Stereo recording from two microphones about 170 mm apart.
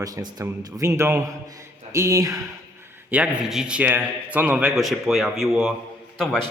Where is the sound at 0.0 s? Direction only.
20° right (ahead or behind).